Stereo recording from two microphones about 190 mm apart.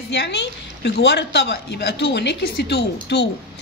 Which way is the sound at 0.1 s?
65° left (ahead or behind).